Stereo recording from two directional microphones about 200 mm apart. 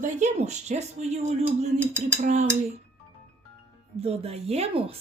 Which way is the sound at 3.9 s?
30° right (ahead or behind).